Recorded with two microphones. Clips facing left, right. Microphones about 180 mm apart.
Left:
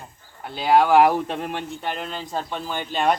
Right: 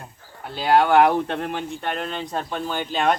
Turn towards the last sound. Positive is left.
turn(degrees=0)  # may be behind; listen again after turning